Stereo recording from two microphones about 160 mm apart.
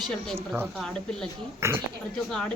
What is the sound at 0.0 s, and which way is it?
Speech, 5° left (ahead or behind).